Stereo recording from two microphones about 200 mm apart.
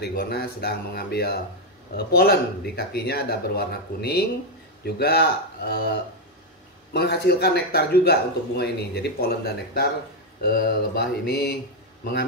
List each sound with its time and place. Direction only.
0.0 s a man's voice: 50° left (ahead or behind)